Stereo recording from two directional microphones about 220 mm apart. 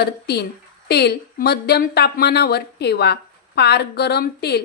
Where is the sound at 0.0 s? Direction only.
45° left (ahead or behind).